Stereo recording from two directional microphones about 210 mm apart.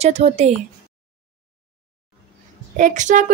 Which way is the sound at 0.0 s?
30° right (ahead or behind).